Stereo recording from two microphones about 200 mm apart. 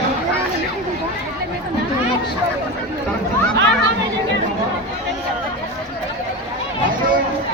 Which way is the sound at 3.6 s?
65° right (ahead or behind).